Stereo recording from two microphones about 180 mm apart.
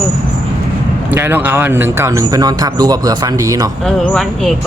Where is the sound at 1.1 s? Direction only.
10° right (ahead or behind).